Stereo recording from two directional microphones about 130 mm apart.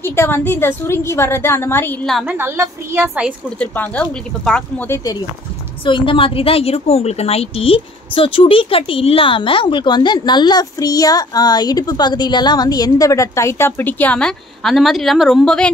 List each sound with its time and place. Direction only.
0.0 s a woman's voice: 20° left (ahead or behind)
2.2 s a woman's voice: 15° right (ahead or behind)
3.4 s speech: 10° left (ahead or behind)
4.8 s a woman's voice: 25° left (ahead or behind)
5.9 s a woman's voice: 40° left (ahead or behind); by 15.7 s 5° left (ahead or behind)